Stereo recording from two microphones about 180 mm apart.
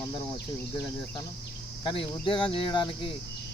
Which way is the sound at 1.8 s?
30° left (ahead or behind).